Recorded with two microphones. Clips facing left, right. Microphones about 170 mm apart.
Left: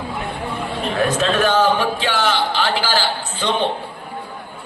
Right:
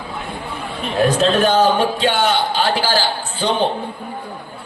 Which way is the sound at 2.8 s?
35° right (ahead or behind).